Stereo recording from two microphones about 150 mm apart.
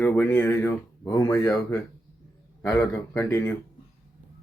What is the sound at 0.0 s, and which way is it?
Speech, 10° left (ahead or behind).